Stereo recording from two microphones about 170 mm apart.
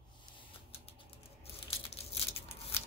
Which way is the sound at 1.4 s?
35° left (ahead or behind).